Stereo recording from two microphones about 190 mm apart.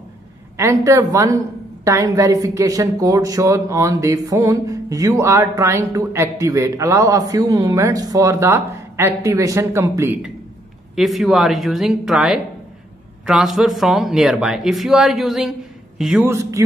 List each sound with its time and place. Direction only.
0.6 s a woman's voice: 15° right (ahead or behind)
16.3 s a woman's voice: 15° right (ahead or behind)